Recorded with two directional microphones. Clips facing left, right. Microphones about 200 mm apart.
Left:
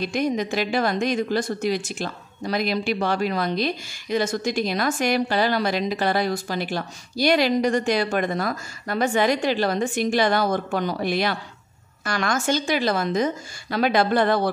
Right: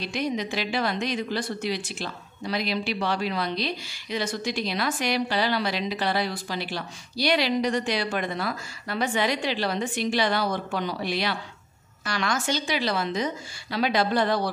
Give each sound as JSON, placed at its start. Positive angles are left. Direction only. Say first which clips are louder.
{"t": 0.0, "sound": "a woman's voice", "louder": "left 5 dB", "side_deg": 50}